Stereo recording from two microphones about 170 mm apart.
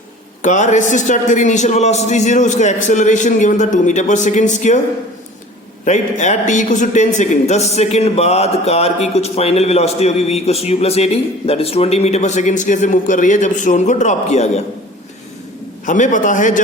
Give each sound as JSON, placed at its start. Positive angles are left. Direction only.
{"t": 0.4, "sound": "a man's voice", "side_deg": 45}
{"t": 5.8, "sound": "a man's voice", "side_deg": 45}
{"t": 15.9, "sound": "a man's voice", "side_deg": 50}